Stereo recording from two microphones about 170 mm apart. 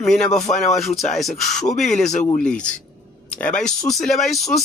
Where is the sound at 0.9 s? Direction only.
40° left (ahead or behind).